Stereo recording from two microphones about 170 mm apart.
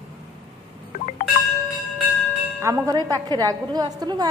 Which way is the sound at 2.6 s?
20° right (ahead or behind).